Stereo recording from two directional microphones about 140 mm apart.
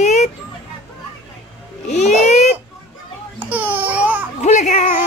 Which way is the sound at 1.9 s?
55° left (ahead or behind).